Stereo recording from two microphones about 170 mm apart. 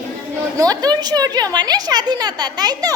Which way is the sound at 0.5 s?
20° right (ahead or behind).